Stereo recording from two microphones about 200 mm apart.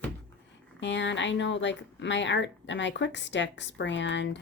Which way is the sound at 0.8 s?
65° left (ahead or behind).